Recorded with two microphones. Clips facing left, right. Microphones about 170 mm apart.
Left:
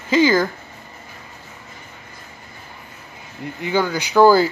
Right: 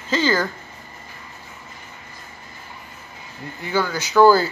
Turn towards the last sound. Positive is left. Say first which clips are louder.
# left 1 dB
turn(degrees=10)  # may be behind; listen again after turning